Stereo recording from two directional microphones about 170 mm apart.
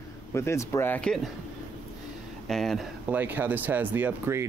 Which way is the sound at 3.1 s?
10° right (ahead or behind).